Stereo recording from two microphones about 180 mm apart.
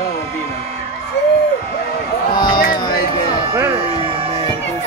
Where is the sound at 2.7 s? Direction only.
25° left (ahead or behind).